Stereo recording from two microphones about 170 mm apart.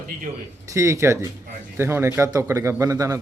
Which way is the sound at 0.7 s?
15° right (ahead or behind).